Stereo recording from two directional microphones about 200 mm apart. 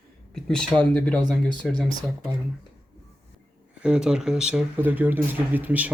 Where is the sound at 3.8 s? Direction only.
5° right (ahead or behind).